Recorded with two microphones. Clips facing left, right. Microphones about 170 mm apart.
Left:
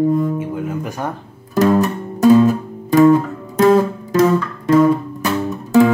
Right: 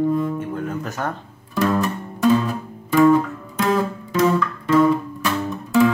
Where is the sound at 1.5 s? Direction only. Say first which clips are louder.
Left 6 dB; 40° left (ahead or behind).